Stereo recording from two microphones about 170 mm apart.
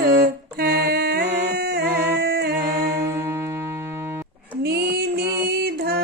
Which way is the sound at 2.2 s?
70° right (ahead or behind).